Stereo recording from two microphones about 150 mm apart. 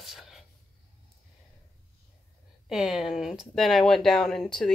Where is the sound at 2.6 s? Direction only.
Centre (ahead or behind).